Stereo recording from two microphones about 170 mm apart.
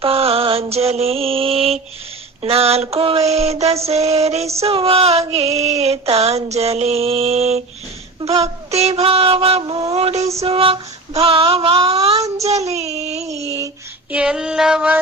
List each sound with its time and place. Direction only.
0.0 s mantra: 35° right (ahead or behind)
2.4 s a sound: 35° right (ahead or behind)
12.4 s child singing: 40° right (ahead or behind)
13.3 s child singing: 20° right (ahead or behind)
14.1 s female singing: 5° right (ahead or behind)